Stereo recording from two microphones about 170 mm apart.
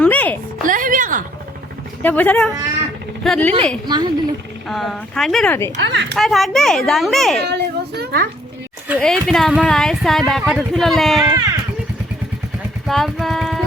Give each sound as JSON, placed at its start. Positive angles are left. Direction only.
{"t": 0.0, "sound": "a sound", "side_deg": 10}
{"t": 0.6, "sound": "a sound", "side_deg": -50}
{"t": 2.0, "sound": "a woman's voice", "side_deg": 10}
{"t": 3.8, "sound": "a woman's voice", "side_deg": -25}
{"t": 4.7, "sound": "speech", "side_deg": 0}
{"t": 5.7, "sound": "speech", "side_deg": -90}
{"t": 6.1, "sound": "speech", "side_deg": 0}
{"t": 7.4, "sound": "a child's voice", "side_deg": -75}
{"t": 9.0, "sound": "speech", "side_deg": 5}
{"t": 12.9, "sound": "music", "side_deg": 0}